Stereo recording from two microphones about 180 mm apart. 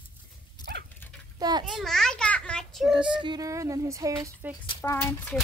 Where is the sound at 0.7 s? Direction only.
65° right (ahead or behind).